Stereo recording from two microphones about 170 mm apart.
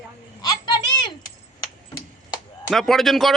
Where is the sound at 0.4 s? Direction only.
25° left (ahead or behind).